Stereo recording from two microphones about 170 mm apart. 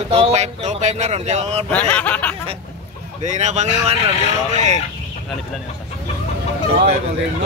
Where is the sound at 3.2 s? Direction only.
45° right (ahead or behind).